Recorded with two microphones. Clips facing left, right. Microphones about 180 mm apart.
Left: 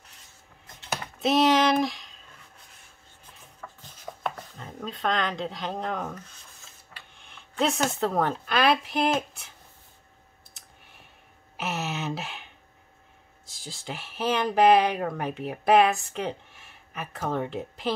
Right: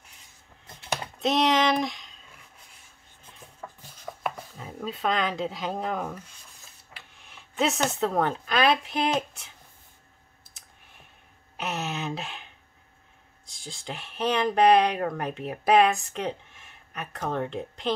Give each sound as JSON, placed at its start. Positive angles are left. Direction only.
{"t": 1.2, "sound": "a sound", "side_deg": 5}
{"t": 3.6, "sound": "chopping", "side_deg": -15}
{"t": 4.2, "sound": "speech", "side_deg": -5}
{"t": 10.6, "sound": "clicking", "side_deg": 0}
{"t": 11.5, "sound": "a sound", "side_deg": 0}
{"t": 13.5, "sound": "speech", "side_deg": 0}